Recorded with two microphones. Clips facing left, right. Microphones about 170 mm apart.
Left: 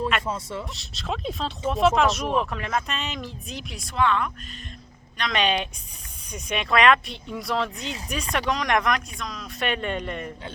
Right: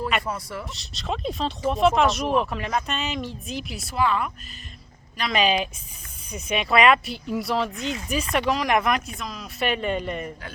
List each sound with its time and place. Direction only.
0.3 s speech: 25° left (ahead or behind)
0.7 s speech: centre (ahead or behind)